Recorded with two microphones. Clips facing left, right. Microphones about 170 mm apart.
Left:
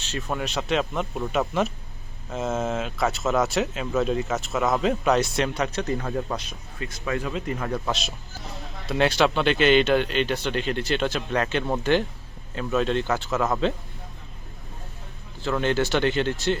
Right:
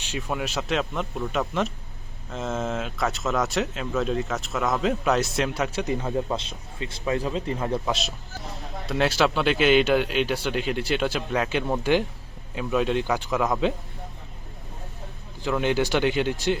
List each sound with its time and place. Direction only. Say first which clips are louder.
0.0 s a sound: even; 10° right (ahead or behind)
0.3 s speech: left 1 dB; 5° right (ahead or behind)
6.4 s speech: right 1 dB; 25° right (ahead or behind)
8.9 s speech: left 1 dB; 5° right (ahead or behind)
15.4 s speech: even; 10° right (ahead or behind)